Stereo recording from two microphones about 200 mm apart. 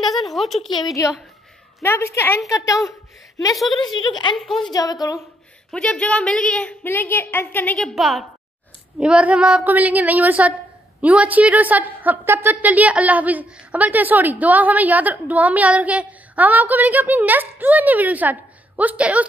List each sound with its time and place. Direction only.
0.0 s speech: centre (ahead or behind)
0.6 s a woman's voice: 20° left (ahead or behind)
3.5 s speech: centre (ahead or behind)
3.9 s speech: 20° left (ahead or behind)
5.7 s a woman's voice: 5° left (ahead or behind)